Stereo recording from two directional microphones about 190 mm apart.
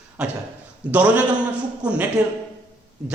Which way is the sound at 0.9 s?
5° right (ahead or behind).